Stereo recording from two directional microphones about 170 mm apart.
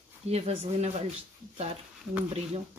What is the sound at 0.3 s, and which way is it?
Speech, 35° right (ahead or behind).